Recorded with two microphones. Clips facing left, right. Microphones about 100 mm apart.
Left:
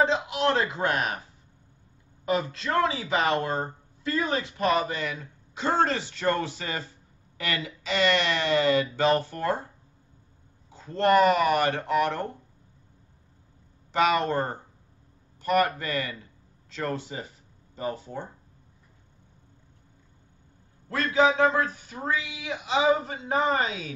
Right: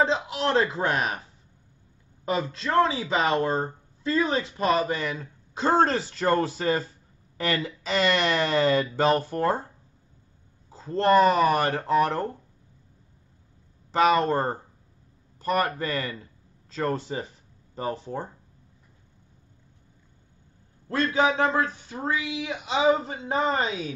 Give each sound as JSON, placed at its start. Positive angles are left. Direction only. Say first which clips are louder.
{"t": 0.0, "sound": "speech", "louder": "left 1 dB", "side_deg": -35}
{"t": 2.2, "sound": "speech", "louder": "even", "side_deg": -30}
{"t": 10.7, "sound": "speech", "louder": "right 1 dB", "side_deg": -35}
{"t": 13.9, "sound": "speech", "louder": "right 2 dB", "side_deg": -35}
{"t": 20.9, "sound": "a man's voice", "louder": "left 1 dB", "side_deg": -30}